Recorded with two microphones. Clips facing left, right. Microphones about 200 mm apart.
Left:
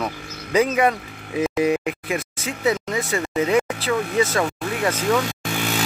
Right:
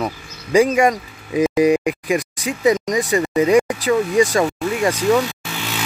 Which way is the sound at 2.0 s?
15° right (ahead or behind).